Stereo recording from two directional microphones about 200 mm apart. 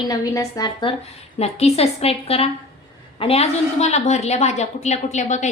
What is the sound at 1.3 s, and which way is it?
A woman's voice, 30° left (ahead or behind).